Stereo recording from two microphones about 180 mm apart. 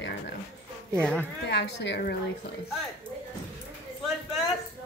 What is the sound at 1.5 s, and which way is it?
Speech, 70° left (ahead or behind).